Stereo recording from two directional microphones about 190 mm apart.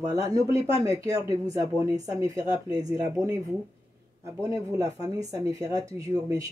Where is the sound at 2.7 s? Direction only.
20° right (ahead or behind).